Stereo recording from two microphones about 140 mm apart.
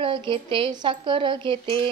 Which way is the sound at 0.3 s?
40° right (ahead or behind).